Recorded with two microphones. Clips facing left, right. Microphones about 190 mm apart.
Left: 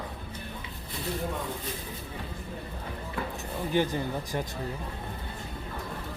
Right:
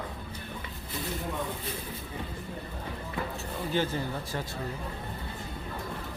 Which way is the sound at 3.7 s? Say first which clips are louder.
Left 3 dB; 15° left (ahead or behind).